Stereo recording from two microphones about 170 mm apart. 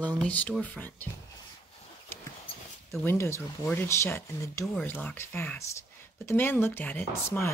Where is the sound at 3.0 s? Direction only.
15° left (ahead or behind).